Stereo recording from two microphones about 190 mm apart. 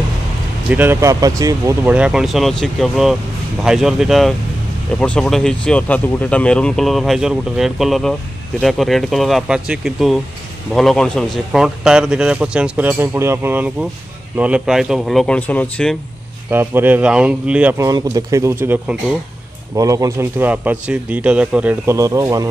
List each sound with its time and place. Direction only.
0.7 s speech: 10° right (ahead or behind)
1.9 s speech: 5° right (ahead or behind)
16.4 s speech: 10° right (ahead or behind)